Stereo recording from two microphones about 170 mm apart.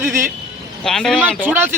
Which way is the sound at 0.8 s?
5° left (ahead or behind).